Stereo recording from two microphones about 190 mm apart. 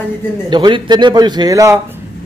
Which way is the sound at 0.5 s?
25° right (ahead or behind).